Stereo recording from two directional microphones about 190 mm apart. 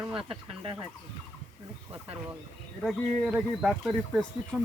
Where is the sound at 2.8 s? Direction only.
Centre (ahead or behind).